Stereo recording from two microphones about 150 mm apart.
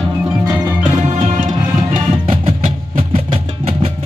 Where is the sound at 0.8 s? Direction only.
55° right (ahead or behind).